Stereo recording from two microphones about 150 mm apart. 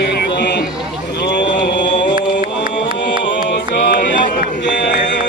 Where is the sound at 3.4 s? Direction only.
90° left.